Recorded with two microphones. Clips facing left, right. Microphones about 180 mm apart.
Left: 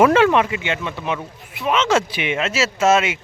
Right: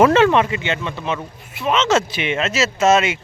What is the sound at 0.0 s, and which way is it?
Speech, 10° left (ahead or behind).